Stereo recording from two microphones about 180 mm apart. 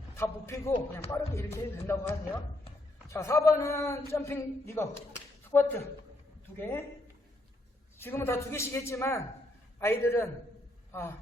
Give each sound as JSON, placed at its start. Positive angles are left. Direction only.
{"t": 0.2, "sound": "a man's voice", "side_deg": 15}
{"t": 7.9, "sound": "a man's voice", "side_deg": 10}